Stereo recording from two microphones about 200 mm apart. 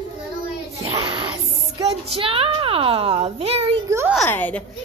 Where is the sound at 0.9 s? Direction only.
20° right (ahead or behind).